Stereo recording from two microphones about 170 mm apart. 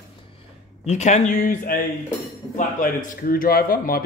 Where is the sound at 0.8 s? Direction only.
40° left (ahead or behind).